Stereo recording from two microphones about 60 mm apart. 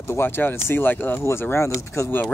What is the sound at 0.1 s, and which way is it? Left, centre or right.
Speech, left.